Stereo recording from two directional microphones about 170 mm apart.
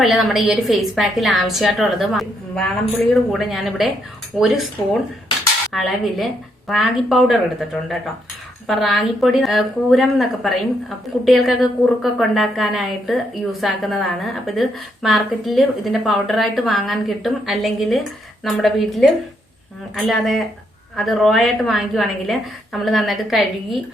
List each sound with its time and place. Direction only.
0.0 s a woman's voice: centre (ahead or behind)
5.7 s a woman's voice: centre (ahead or behind)